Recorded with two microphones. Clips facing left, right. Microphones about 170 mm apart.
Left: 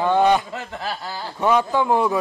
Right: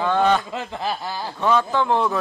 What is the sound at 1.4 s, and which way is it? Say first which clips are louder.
Speech: left 1 dB; 15° left (ahead or behind).